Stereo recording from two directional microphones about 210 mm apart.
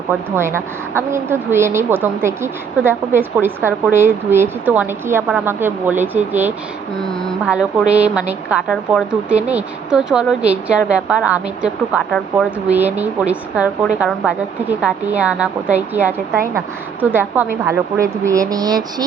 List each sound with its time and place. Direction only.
0.3 s a woman's voice: 10° right (ahead or behind)
7.0 s a woman's voice: centre (ahead or behind); by 19.0 s 20° right (ahead or behind)